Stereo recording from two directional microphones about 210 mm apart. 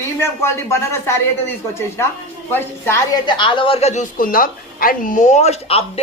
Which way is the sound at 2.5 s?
10° left (ahead or behind).